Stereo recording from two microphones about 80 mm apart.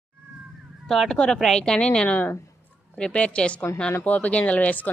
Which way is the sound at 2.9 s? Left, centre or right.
Centre.